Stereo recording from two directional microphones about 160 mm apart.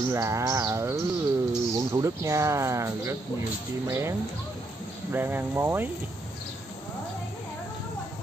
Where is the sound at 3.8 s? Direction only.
15° right (ahead or behind).